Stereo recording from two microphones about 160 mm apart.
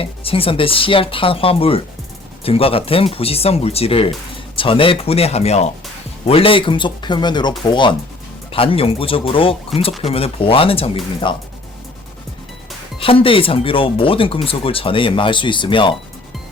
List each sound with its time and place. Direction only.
0.0 s speech: 35° left (ahead or behind)
13.0 s speech: 35° left (ahead or behind)